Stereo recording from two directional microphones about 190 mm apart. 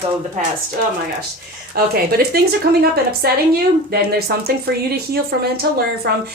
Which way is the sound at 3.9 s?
55° right (ahead or behind).